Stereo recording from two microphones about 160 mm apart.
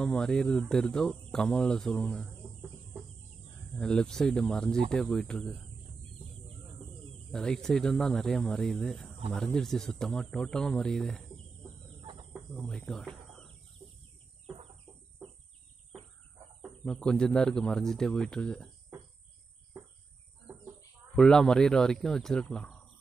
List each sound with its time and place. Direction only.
0.0 s speech: 5° left (ahead or behind)
3.7 s speech: 5° left (ahead or behind)
7.2 s speech: 5° left (ahead or behind)
12.0 s chicken: 30° right (ahead or behind)
12.4 s speech: centre (ahead or behind)
16.8 s speech: 5° left (ahead or behind)
21.1 s speech: 5° left (ahead or behind)